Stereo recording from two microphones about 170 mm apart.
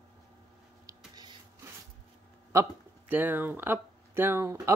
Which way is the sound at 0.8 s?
20° right (ahead or behind).